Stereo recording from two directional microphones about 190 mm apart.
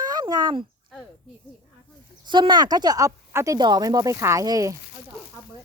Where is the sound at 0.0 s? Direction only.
20° right (ahead or behind).